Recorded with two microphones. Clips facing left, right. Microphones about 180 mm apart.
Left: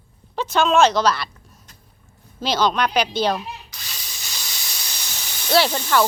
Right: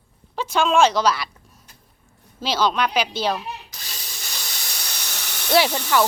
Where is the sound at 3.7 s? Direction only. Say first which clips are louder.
Even; 45° right (ahead or behind).